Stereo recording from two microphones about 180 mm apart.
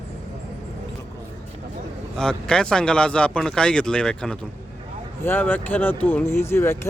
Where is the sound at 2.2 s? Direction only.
5° left (ahead or behind).